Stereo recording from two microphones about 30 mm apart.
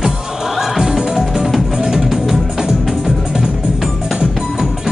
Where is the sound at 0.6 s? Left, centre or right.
Centre.